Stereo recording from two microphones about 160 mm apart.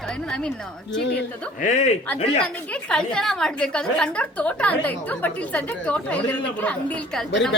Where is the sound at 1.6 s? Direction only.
45° left (ahead or behind).